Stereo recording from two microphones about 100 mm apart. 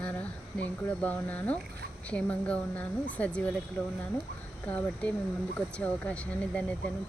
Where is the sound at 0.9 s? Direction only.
15° left (ahead or behind).